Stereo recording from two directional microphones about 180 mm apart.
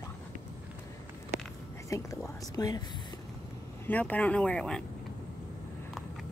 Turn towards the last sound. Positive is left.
turn(degrees=5)  # may be behind; listen again after turning